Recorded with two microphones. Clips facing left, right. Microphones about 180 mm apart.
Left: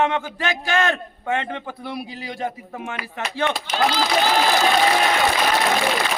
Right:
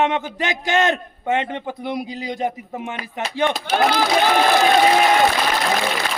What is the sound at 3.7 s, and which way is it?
Speech, 55° right (ahead or behind).